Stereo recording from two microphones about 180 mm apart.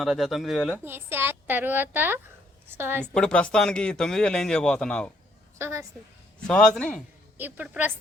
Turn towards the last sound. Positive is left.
turn(degrees=-10)  # may be behind; listen again after turning